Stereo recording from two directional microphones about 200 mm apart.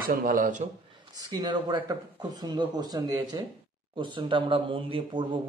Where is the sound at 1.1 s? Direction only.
20° right (ahead or behind).